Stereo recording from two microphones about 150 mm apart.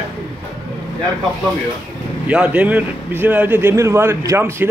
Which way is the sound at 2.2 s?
10° right (ahead or behind).